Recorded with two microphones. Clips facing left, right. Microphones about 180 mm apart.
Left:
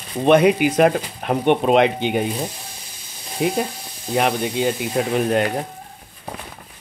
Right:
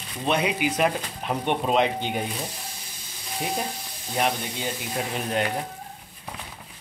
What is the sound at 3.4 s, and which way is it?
Speech, 75° left (ahead or behind).